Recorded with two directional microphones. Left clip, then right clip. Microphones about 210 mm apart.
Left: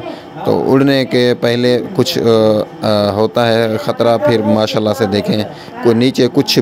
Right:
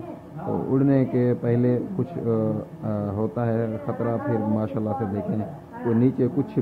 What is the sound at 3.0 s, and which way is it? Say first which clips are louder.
Speech: left 12 dB; 55° left (ahead or behind).